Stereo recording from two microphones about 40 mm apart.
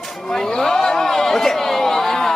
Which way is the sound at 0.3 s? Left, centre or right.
Centre.